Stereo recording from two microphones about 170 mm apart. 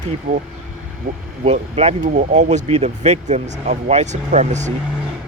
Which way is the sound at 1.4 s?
40° right (ahead or behind).